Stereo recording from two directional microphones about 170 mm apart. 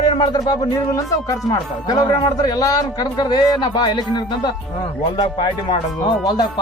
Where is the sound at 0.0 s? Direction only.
25° left (ahead or behind).